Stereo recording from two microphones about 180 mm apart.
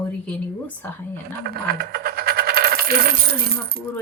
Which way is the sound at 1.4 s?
60° right (ahead or behind).